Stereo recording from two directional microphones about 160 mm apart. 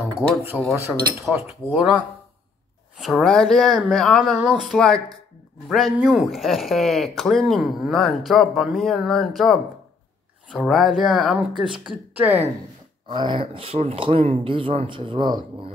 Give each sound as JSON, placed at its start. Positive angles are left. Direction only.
{"t": 0.2, "sound": "speech", "side_deg": 0}
{"t": 0.7, "sound": "speech", "side_deg": -15}
{"t": 13.1, "sound": "speech", "side_deg": -30}